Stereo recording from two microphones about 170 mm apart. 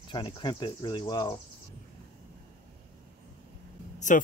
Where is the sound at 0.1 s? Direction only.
25° left (ahead or behind).